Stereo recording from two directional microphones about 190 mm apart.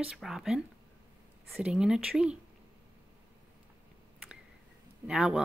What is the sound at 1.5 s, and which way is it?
Speech, 5° right (ahead or behind).